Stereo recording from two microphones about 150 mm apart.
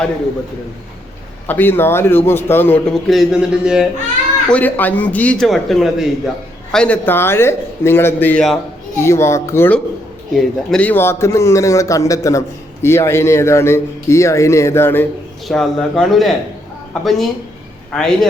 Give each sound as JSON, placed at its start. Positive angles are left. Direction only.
{"t": 1.5, "sound": "a man's voice", "side_deg": 15}
{"t": 3.1, "sound": "speech", "side_deg": -5}
{"t": 4.4, "sound": "a man's voice", "side_deg": 10}
{"t": 15.4, "sound": "speech", "side_deg": 0}